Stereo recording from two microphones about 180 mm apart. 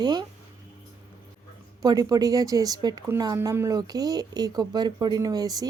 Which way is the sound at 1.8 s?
20° right (ahead or behind).